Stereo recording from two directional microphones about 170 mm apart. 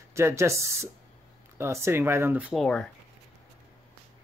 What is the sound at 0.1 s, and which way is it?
Speech, 15° right (ahead or behind).